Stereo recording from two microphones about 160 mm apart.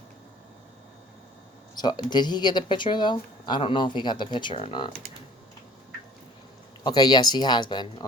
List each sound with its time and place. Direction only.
1.7 s speech: 25° left (ahead or behind)
6.8 s speech: 25° left (ahead or behind)